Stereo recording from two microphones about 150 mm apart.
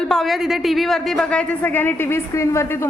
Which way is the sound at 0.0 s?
Centre (ahead or behind).